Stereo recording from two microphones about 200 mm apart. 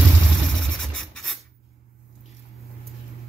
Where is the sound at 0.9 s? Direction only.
Centre (ahead or behind).